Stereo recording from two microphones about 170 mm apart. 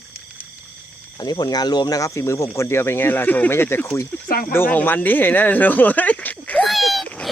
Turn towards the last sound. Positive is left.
turn(degrees=0)  # may be behind; listen again after turning